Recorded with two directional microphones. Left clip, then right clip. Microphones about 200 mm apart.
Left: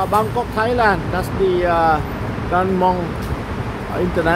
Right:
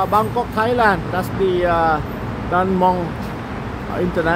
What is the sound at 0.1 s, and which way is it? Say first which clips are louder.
Speech: even; 5° right (ahead or behind).